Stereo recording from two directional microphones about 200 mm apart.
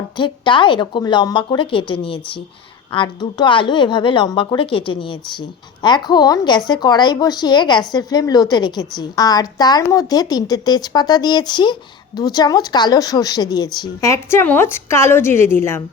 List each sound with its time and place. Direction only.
0.2 s a woman's voice: 25° left (ahead or behind)